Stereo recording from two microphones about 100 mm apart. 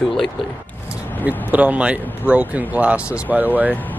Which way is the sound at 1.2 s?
15° right (ahead or behind).